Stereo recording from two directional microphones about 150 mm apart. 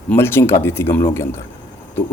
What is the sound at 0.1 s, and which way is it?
Speech, 15° left (ahead or behind).